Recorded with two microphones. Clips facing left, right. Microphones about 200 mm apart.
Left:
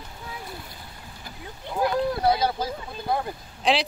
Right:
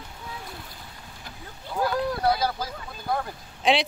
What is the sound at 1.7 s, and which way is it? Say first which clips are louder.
Speech: left 2 dB; 20° left (ahead or behind).